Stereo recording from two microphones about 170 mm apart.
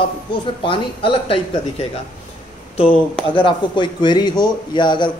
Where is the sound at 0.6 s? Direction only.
30° left (ahead or behind).